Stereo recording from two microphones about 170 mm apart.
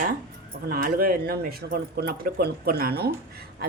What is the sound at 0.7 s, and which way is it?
Speech, 60° right (ahead or behind).